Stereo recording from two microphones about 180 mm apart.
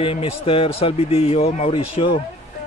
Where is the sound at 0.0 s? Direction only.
30° left (ahead or behind).